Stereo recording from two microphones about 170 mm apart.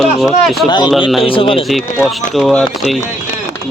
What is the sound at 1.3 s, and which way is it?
Speech, 30° left (ahead or behind).